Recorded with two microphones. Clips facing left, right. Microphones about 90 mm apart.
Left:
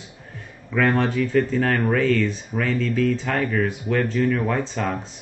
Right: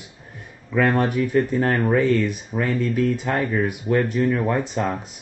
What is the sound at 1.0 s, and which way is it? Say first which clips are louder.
Speech: even; 15° right (ahead or behind).